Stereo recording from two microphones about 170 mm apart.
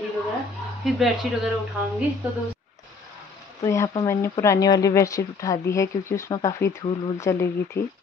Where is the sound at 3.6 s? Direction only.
20° left (ahead or behind).